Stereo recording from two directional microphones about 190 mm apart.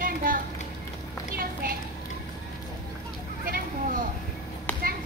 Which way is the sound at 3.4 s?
50° right (ahead or behind).